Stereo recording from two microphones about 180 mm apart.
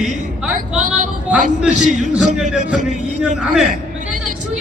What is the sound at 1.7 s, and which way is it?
Music, 45° right (ahead or behind).